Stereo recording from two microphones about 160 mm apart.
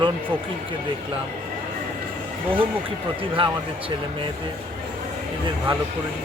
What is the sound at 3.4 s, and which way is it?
Speech, 35° right (ahead or behind).